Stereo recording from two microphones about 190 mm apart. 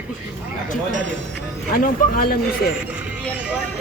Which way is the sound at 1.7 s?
50° left (ahead or behind).